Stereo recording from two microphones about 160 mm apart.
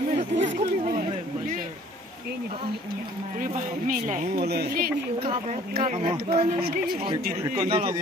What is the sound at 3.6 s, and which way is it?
Speech, 55° right (ahead or behind).